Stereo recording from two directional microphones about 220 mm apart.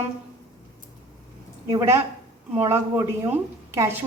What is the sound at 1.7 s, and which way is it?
A woman's voice, 15° right (ahead or behind).